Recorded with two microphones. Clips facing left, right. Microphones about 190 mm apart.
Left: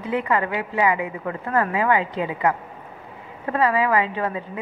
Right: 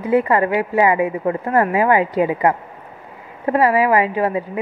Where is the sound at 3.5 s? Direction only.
20° right (ahead or behind).